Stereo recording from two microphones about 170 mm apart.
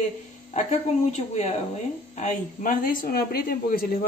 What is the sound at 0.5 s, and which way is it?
A woman's voice, 40° left (ahead or behind).